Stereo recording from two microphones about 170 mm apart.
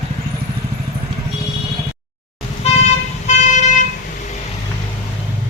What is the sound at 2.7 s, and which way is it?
Vehicle, 40° left (ahead or behind).